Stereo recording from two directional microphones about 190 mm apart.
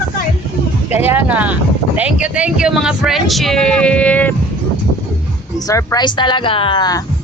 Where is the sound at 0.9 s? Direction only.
10° right (ahead or behind); by 4.4 s 10° left (ahead or behind).